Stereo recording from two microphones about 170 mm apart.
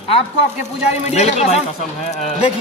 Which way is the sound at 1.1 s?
40° left (ahead or behind).